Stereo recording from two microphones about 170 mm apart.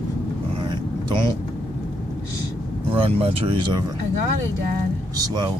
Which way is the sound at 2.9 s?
35° right (ahead or behind).